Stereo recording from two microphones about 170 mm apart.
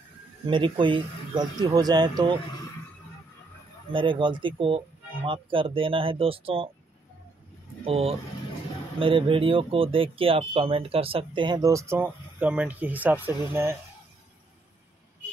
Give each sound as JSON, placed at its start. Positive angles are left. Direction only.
{"t": 0.5, "sound": "speech", "side_deg": -30}
{"t": 3.9, "sound": "speech", "side_deg": -30}
{"t": 7.8, "sound": "speech", "side_deg": -35}